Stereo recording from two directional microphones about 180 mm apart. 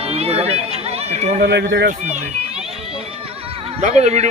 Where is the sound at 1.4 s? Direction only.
75° right (ahead or behind).